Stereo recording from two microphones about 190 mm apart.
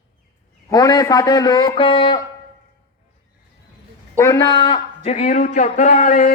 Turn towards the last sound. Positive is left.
turn(degrees=40)  # may be behind; listen again after turning